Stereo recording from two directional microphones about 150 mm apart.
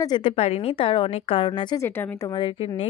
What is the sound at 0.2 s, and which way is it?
A woman's voice, 45° left (ahead or behind).